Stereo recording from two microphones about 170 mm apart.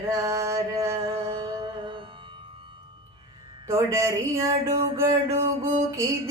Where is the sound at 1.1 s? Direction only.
30° right (ahead or behind).